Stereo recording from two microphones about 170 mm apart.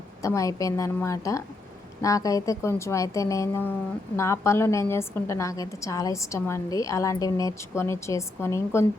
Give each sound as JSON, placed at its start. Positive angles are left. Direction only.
{"t": 0.2, "sound": "a woman's voice", "side_deg": 20}